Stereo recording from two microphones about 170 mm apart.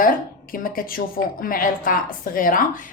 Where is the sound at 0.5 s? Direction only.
55° left (ahead or behind).